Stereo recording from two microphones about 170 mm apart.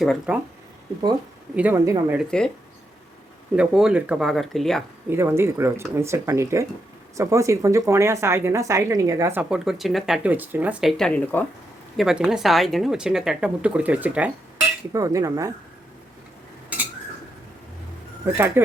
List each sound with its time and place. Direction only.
0.0 s speech: centre (ahead or behind)
1.5 s speech: 15° right (ahead or behind)
2.1 s speech: 5° left (ahead or behind)
3.5 s speech: 5° right (ahead or behind)
5.0 s speech: 15° right (ahead or behind); by 11.4 s 10° left (ahead or behind)
11.9 s speech: 5° right (ahead or behind)
14.9 s speech: 20° right (ahead or behind)
18.3 s speech: 15° right (ahead or behind)